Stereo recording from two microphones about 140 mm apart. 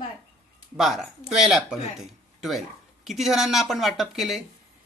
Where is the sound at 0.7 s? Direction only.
5° right (ahead or behind).